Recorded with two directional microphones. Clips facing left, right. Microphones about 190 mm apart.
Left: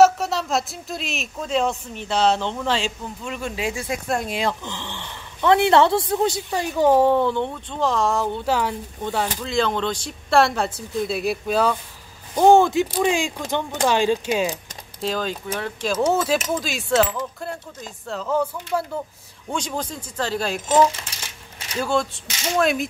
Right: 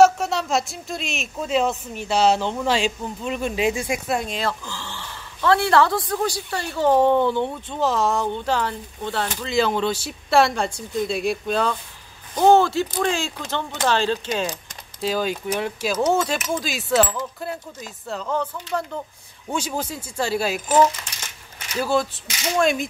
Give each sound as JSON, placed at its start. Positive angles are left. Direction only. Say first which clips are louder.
{"t": 0.0, "sound": "speech", "louder": "even", "side_deg": 0}
{"t": 4.3, "sound": "speech", "louder": "left 2 dB", "side_deg": 15}
{"t": 9.5, "sound": "speech", "louder": "right 3 dB", "side_deg": -5}
{"t": 15.0, "sound": "speech", "louder": "right 2 dB", "side_deg": -5}
{"t": 16.1, "sound": "speech", "louder": "left 1 dB", "side_deg": 5}
{"t": 19.5, "sound": "speech", "louder": "right 1 dB", "side_deg": -5}
{"t": 21.7, "sound": "speech", "louder": "right 1 dB", "side_deg": -5}